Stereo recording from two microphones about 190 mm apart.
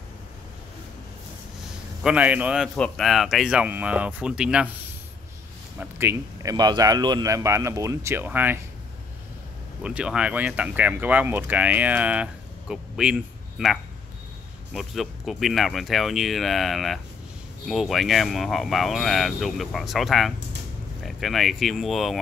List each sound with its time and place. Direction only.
2.0 s speech: 5° right (ahead or behind)
5.8 s speech: 10° right (ahead or behind)
9.8 s speech: 5° right (ahead or behind)